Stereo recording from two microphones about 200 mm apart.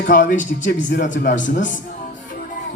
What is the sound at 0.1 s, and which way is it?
Speech, 40° left (ahead or behind).